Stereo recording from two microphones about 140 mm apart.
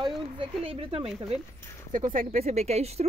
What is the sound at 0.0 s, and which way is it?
Speech, 40° right (ahead or behind).